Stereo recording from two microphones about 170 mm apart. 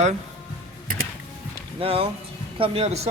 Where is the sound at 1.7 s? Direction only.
35° right (ahead or behind).